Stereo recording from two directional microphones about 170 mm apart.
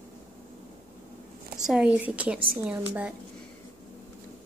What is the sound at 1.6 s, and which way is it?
Speech, 5° right (ahead or behind).